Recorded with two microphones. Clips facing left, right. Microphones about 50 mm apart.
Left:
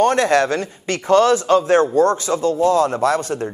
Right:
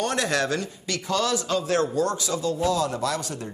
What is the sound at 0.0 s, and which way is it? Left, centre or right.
A man's voice, left.